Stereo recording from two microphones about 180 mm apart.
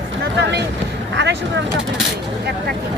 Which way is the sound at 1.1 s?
75° right (ahead or behind).